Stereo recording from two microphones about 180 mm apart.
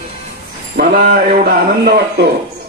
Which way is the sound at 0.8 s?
55° right (ahead or behind).